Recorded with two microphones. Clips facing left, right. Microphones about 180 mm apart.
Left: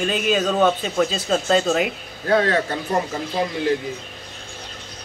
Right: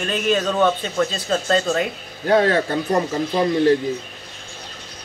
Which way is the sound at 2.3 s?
35° right (ahead or behind).